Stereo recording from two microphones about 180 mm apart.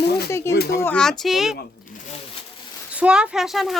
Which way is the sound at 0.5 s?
60° left (ahead or behind).